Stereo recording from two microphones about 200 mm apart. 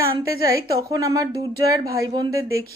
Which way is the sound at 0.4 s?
15° right (ahead or behind).